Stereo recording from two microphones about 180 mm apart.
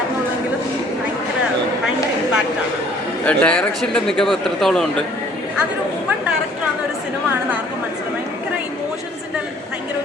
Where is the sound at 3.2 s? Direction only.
5° left (ahead or behind).